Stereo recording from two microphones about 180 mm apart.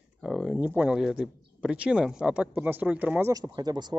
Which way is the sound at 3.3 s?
20° right (ahead or behind).